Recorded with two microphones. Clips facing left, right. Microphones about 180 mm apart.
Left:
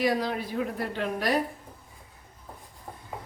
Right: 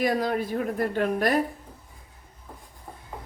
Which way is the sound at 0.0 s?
45° right (ahead or behind).